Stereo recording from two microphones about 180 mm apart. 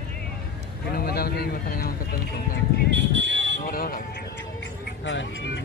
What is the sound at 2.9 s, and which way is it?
Music, 80° right.